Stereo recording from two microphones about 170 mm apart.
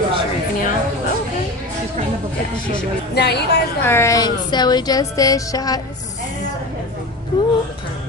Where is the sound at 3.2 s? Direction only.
75° left (ahead or behind).